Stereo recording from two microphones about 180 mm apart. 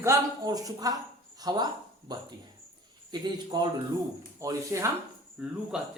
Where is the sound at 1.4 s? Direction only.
25° right (ahead or behind).